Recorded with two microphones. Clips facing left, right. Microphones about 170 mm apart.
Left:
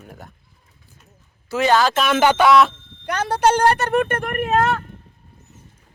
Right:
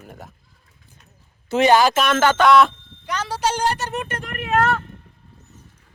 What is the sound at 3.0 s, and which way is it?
Speech, 55° left (ahead or behind).